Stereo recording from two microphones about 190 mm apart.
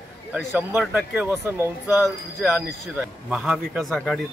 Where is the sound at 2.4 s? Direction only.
5° right (ahead or behind).